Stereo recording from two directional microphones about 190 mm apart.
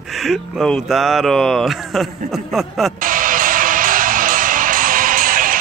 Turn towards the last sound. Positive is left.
turn(degrees=-45)  # may be behind; listen again after turning